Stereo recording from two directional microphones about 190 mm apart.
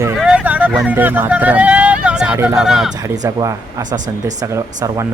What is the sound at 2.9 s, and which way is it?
Speech, 20° right (ahead or behind).